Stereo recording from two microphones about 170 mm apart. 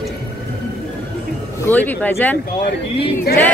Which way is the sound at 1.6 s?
10° left (ahead or behind).